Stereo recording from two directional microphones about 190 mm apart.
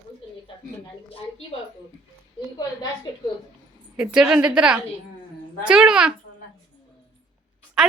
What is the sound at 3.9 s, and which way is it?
A woman's voice, 5° right (ahead or behind).